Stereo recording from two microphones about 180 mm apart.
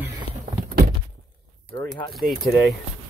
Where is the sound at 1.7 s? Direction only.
25° left (ahead or behind).